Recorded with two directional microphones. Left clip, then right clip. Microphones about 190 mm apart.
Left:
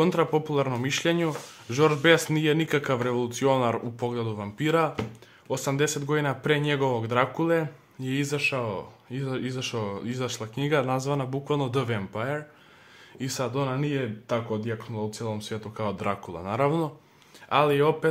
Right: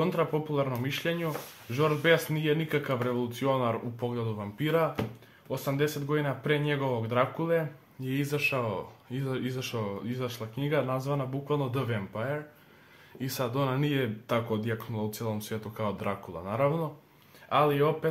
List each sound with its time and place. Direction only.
0.0 s speech: 45° left (ahead or behind)
13.2 s speech: 20° left (ahead or behind); by 17.9 s 45° left (ahead or behind)